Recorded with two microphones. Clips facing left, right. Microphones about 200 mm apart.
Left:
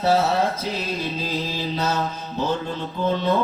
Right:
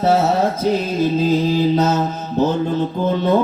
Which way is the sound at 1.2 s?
50° right (ahead or behind).